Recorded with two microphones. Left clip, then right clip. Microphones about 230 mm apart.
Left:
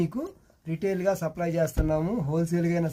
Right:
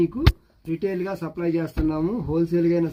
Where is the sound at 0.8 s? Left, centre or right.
Left.